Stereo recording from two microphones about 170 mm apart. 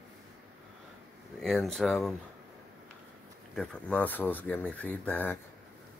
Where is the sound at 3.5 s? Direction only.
5° left (ahead or behind).